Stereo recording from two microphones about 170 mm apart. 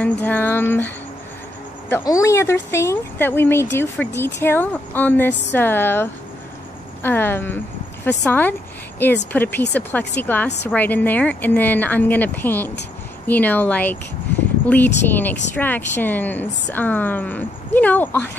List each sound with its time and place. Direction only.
0.0 s a woman's voice: 10° left (ahead or behind)
15.0 s a woman's voice: 10° left (ahead or behind)